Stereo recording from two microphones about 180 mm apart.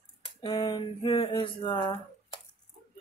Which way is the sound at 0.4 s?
30° left (ahead or behind).